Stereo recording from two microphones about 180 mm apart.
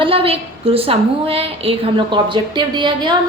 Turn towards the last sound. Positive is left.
turn(degrees=-25)  # may be behind; listen again after turning